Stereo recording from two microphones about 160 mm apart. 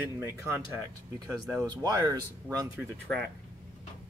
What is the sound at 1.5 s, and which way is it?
Speech, 20° right (ahead or behind).